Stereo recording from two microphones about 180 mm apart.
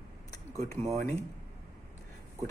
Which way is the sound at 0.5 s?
20° left (ahead or behind).